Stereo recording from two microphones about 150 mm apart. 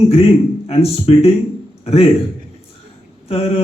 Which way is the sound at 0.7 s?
40° left (ahead or behind).